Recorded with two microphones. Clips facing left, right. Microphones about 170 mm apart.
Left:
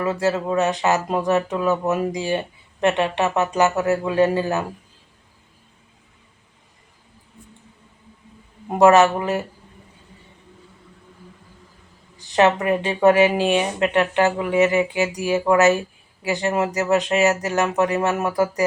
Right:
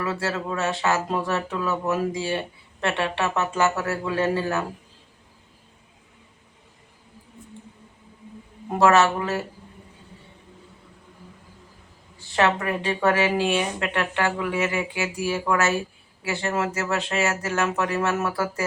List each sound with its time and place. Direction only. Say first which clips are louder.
0.0 s speech: left 6 dB; 15° left (ahead or behind)
8.8 s speech: left 5 dB; 15° left (ahead or behind)
12.1 s speech: left 5 dB; 15° left (ahead or behind)